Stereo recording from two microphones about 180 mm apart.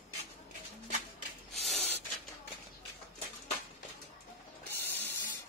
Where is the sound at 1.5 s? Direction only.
Centre (ahead or behind).